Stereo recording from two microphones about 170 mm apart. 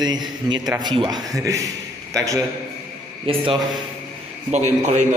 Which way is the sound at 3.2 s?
30° right (ahead or behind).